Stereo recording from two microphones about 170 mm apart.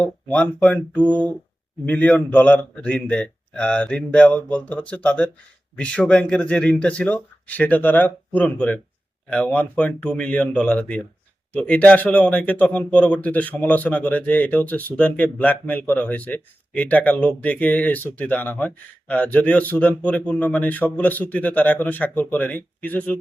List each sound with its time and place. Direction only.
0.0 s speech: 5° left (ahead or behind)